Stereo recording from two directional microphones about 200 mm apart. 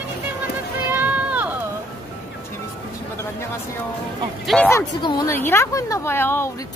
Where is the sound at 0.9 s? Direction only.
10° right (ahead or behind).